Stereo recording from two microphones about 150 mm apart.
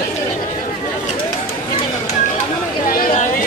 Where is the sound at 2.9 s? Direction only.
65° left (ahead or behind).